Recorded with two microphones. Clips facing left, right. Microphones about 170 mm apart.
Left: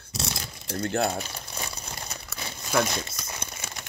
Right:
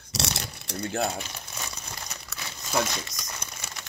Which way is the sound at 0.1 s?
80° right.